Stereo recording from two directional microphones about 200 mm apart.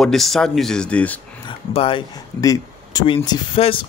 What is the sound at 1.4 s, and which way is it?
Speech, 25° left (ahead or behind).